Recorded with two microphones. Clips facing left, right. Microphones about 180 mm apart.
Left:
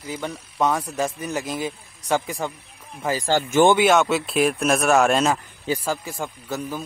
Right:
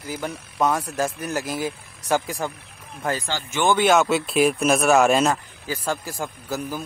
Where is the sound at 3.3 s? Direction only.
50° left (ahead or behind).